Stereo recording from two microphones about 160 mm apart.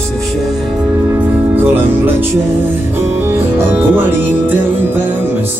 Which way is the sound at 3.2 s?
15° right (ahead or behind).